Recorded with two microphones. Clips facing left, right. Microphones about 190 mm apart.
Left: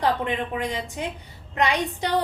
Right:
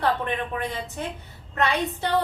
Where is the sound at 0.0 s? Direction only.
15° left (ahead or behind).